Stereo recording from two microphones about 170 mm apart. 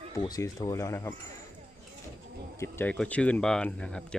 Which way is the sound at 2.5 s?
15° left (ahead or behind).